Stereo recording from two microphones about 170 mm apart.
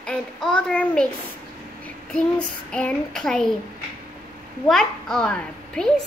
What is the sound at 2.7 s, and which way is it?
Speech, 5° left (ahead or behind).